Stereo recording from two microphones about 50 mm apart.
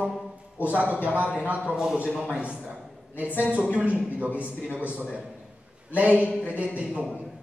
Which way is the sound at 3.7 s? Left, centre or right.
Right.